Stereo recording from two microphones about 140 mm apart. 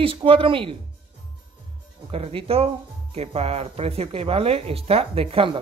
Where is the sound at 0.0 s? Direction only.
40° right (ahead or behind).